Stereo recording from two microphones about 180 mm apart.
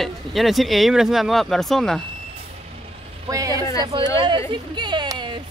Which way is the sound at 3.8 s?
25° right (ahead or behind).